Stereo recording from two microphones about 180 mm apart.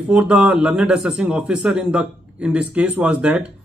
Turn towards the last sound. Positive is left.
turn(degrees=-5)  # may be behind; listen again after turning